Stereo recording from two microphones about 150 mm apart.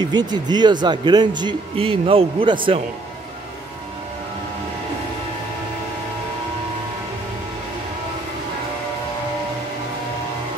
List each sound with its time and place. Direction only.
0.0 s speech: 30° right (ahead or behind)